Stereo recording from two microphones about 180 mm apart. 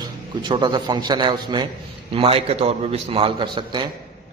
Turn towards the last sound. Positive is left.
turn(degrees=-25)  # may be behind; listen again after turning